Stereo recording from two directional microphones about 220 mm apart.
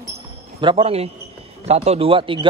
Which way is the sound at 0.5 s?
20° right (ahead or behind).